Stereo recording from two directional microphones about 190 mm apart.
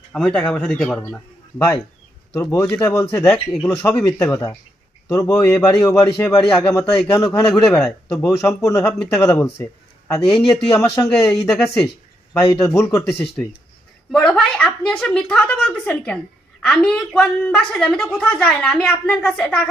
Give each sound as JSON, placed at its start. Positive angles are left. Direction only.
{"t": 0.1, "sound": "speech", "side_deg": 5}
{"t": 1.5, "sound": "a woman's voice", "side_deg": 15}
{"t": 7.8, "sound": "speech", "side_deg": 5}
{"t": 8.3, "sound": "a woman's voice", "side_deg": 15}
{"t": 11.1, "sound": "a woman's voice", "side_deg": 5}